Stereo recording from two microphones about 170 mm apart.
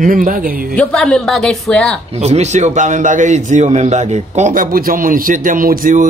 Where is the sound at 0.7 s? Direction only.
5° left (ahead or behind).